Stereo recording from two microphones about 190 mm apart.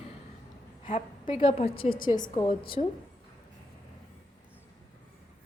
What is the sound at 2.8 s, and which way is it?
Speech, 35° left (ahead or behind).